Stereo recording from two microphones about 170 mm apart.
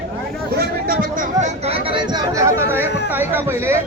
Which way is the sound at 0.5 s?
60° right (ahead or behind).